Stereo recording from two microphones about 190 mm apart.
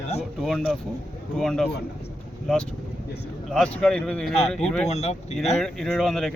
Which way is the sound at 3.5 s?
5° left (ahead or behind).